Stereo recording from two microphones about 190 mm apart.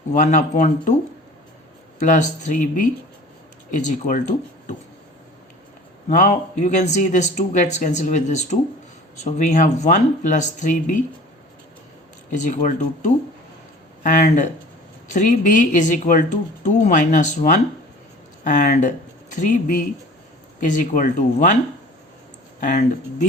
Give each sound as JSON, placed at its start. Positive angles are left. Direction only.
{"t": 0.1, "sound": "speech", "side_deg": 40}
{"t": 2.0, "sound": "speech", "side_deg": 40}
{"t": 6.1, "sound": "speech", "side_deg": 40}
{"t": 12.3, "sound": "speech", "side_deg": 40}
{"t": 14.0, "sound": "speech", "side_deg": 40}
{"t": 22.6, "sound": "speech", "side_deg": 40}